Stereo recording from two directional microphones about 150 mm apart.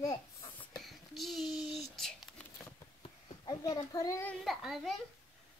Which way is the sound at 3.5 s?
25° left (ahead or behind).